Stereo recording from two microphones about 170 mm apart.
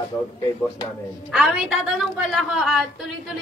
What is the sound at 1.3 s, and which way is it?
Speech, 5° right (ahead or behind).